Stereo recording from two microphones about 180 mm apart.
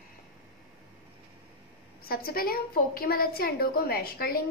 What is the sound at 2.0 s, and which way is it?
A woman's voice, 55° left (ahead or behind).